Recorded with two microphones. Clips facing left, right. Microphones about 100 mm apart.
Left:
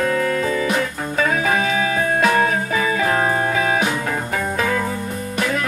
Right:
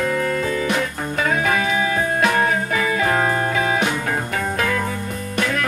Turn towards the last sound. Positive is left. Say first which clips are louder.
# left 1 dB
turn(degrees=25)  # may be behind; listen again after turning